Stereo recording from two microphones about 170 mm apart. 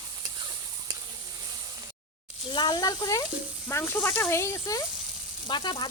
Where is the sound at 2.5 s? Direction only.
25° left (ahead or behind).